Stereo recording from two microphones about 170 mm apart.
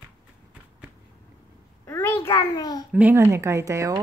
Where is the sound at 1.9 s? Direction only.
15° left (ahead or behind).